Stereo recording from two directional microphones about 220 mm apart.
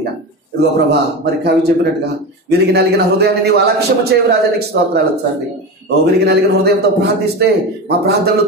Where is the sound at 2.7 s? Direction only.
45° right (ahead or behind).